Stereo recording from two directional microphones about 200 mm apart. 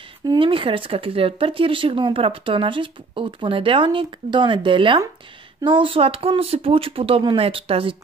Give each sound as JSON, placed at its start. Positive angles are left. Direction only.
{"t": 0.3, "sound": "speech", "side_deg": -25}